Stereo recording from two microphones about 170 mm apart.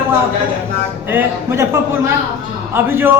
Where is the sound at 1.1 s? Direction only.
15° right (ahead or behind).